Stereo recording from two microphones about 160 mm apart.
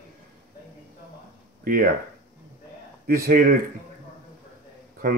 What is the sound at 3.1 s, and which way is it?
Speech, 65° right (ahead or behind).